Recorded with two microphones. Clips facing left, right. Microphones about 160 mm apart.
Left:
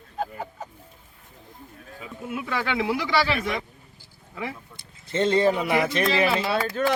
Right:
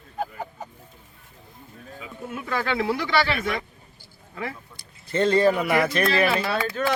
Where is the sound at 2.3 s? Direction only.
15° left (ahead or behind).